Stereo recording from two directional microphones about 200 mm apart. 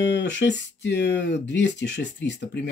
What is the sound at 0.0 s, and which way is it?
Speech, 60° left (ahead or behind).